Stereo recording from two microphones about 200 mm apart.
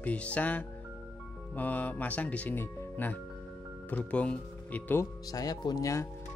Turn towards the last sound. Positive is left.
turn(degrees=15)  # may be behind; listen again after turning